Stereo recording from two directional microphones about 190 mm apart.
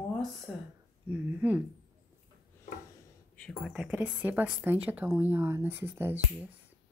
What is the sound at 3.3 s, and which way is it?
Speech, centre (ahead or behind).